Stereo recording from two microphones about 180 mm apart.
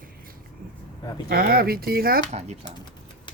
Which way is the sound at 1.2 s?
55° right (ahead or behind).